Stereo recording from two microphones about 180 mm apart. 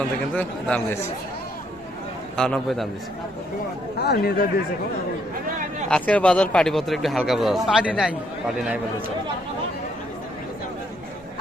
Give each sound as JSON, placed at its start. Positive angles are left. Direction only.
{"t": 2.3, "sound": "speech", "side_deg": 5}
{"t": 3.9, "sound": "speech", "side_deg": 65}
{"t": 5.9, "sound": "speech", "side_deg": 5}